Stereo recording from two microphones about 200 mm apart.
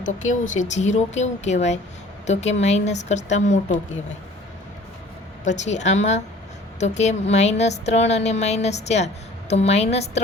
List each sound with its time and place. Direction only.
0.0 s a woman's voice: 40° left (ahead or behind)
5.5 s a woman's voice: 35° left (ahead or behind)